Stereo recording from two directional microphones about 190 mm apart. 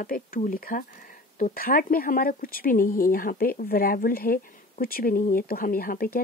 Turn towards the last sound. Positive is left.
turn(degrees=50)  # may be behind; listen again after turning